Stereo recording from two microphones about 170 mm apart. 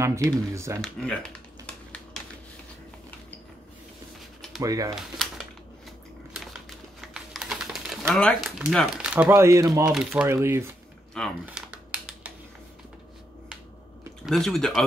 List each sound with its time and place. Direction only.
0.0 s speech: 15° right (ahead or behind)
0.7 s speech: 5° left (ahead or behind)
4.6 s speech: 20° right (ahead or behind)
6.3 s typing: 5° right (ahead or behind)
8.1 s speech: centre (ahead or behind); by 10.6 s 15° right (ahead or behind)
11.4 s typewriter: 10° right (ahead or behind)
14.2 s speech: centre (ahead or behind)